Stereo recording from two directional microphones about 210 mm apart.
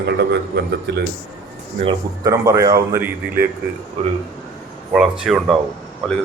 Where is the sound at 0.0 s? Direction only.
55° right (ahead or behind).